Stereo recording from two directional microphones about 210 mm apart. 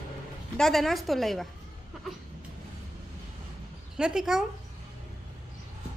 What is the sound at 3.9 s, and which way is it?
Speech, 5° right (ahead or behind).